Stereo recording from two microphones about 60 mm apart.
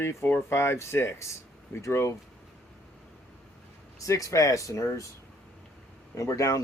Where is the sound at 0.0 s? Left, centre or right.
Left.